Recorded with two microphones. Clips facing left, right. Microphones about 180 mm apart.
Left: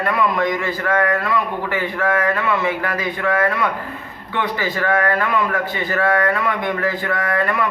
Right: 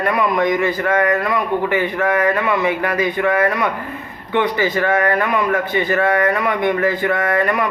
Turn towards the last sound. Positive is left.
turn(degrees=-20)  # may be behind; listen again after turning